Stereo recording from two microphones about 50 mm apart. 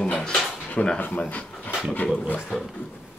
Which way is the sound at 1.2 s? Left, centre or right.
Left.